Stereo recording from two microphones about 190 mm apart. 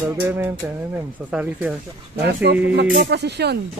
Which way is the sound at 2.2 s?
65° right (ahead or behind).